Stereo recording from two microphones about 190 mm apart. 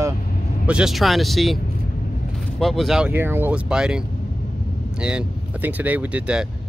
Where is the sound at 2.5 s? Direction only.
Centre (ahead or behind).